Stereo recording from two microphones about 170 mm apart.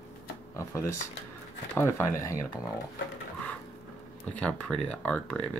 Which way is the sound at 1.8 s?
15° left (ahead or behind).